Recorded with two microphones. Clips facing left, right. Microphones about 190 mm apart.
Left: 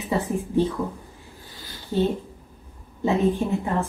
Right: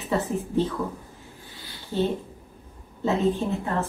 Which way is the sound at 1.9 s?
15° left (ahead or behind).